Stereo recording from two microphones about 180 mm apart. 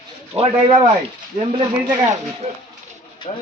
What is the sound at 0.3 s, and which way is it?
Speech, 30° right (ahead or behind).